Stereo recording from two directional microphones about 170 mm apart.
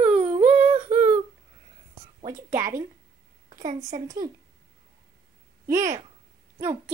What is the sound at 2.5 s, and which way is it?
Speech, 15° right (ahead or behind).